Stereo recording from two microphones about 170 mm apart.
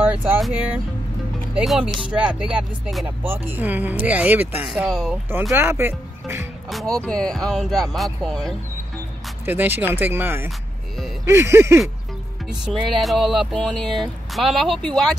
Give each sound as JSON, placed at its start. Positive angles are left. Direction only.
{"t": 0.4, "sound": "speech", "side_deg": -10}
{"t": 6.7, "sound": "speech", "side_deg": 0}
{"t": 9.5, "sound": "speech", "side_deg": -10}
{"t": 12.4, "sound": "speech", "side_deg": 0}